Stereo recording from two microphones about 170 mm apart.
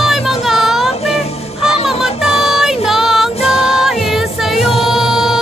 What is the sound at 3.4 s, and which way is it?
Music, 35° left (ahead or behind).